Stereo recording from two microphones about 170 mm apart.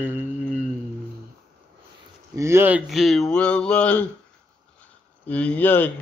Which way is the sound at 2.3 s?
15° right (ahead or behind).